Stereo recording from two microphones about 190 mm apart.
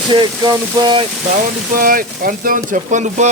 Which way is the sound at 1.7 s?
45° right (ahead or behind).